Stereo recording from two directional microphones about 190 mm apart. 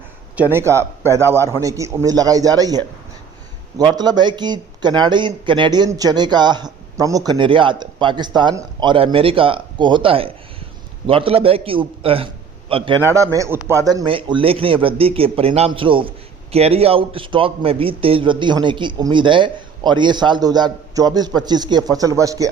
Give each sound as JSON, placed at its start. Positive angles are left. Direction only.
{"t": 0.3, "sound": "a man's voice", "side_deg": -10}
{"t": 13.0, "sound": "a man's voice", "side_deg": -15}